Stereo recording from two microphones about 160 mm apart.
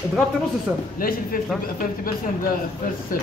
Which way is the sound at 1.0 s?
65° left (ahead or behind).